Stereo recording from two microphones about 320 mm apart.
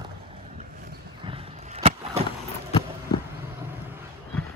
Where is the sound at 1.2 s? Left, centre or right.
Centre.